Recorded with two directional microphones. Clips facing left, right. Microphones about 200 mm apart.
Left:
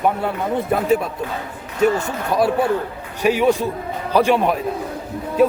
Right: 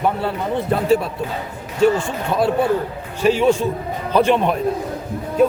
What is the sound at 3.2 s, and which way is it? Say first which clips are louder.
A man's voice: right 1 dB; 15° left (ahead or behind).